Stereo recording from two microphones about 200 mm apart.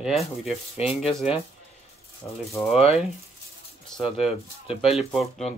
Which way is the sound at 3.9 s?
5° left (ahead or behind).